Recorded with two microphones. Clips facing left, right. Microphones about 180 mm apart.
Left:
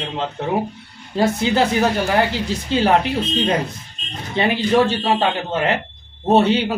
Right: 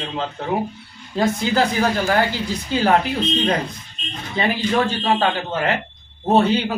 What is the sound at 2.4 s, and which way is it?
Speech, 30° left (ahead or behind).